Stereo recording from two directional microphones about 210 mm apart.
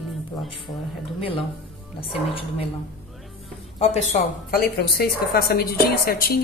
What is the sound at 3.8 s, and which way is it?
Speech, 30° left (ahead or behind).